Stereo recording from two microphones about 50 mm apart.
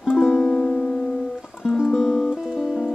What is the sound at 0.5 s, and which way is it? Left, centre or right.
Music, left.